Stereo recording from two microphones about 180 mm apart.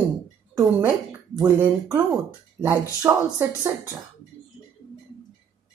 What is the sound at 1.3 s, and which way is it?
Speech, 10° right (ahead or behind).